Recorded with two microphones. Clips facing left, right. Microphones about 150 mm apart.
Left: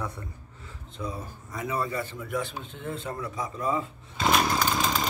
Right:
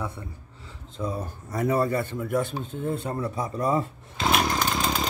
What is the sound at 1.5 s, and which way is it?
A man's voice, 45° right (ahead or behind).